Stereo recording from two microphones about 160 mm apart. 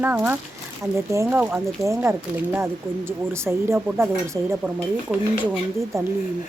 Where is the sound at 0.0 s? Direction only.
10° right (ahead or behind).